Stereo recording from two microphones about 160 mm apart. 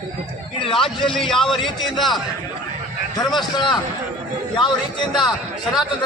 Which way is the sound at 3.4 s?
30° left (ahead or behind).